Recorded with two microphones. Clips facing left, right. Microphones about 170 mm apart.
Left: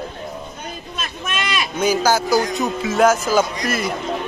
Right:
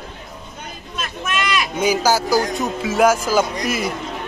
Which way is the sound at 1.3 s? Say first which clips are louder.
Right 3 dB; 30° left (ahead or behind).